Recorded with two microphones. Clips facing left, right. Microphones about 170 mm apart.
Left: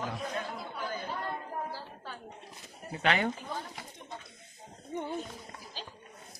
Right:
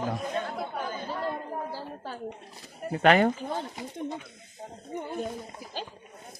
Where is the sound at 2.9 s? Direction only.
50° right (ahead or behind).